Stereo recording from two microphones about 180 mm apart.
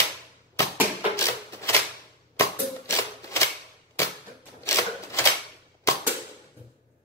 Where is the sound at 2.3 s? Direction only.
15° left (ahead or behind).